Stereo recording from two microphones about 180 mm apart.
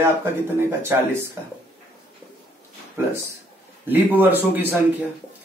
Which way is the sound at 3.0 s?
15° right (ahead or behind).